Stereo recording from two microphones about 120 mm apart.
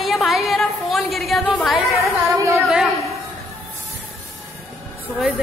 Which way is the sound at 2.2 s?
25° right (ahead or behind).